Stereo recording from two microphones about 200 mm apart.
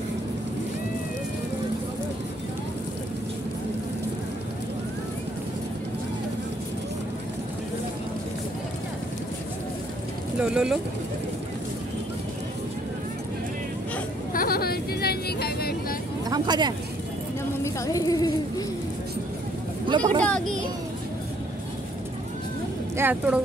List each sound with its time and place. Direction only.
10.4 s speech: 5° right (ahead or behind)
14.3 s vehicle: 45° left (ahead or behind)
16.3 s speech: 20° right (ahead or behind)
17.6 s a woman's voice: 15° left (ahead or behind)
19.9 s speech: 25° right (ahead or behind)
20.2 s speech: 5° left (ahead or behind)
22.9 s speech: 10° right (ahead or behind)